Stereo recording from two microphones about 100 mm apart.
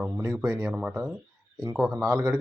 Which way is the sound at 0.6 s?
10° right (ahead or behind).